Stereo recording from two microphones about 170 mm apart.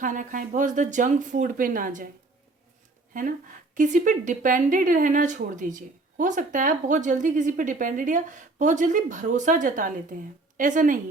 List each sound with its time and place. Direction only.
0.0 s speech: 50° right (ahead or behind)
3.1 s speech: 50° right (ahead or behind)